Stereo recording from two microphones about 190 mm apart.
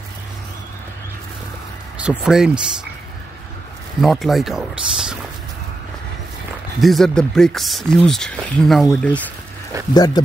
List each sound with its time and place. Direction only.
2.0 s speech: 5° right (ahead or behind)
4.0 s speech: centre (ahead or behind)
6.8 s speech: centre (ahead or behind)
9.9 s speech: 20° left (ahead or behind)